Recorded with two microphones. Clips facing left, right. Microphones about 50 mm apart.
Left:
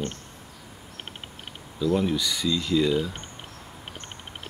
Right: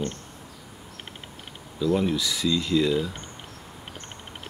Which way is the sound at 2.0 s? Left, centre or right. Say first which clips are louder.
Even; centre.